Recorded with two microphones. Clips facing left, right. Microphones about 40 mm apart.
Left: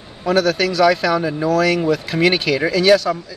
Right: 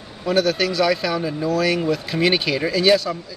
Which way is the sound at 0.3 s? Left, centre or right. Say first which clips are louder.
Left 3 dB; centre.